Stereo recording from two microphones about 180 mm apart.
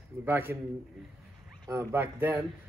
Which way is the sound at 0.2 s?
10° right (ahead or behind).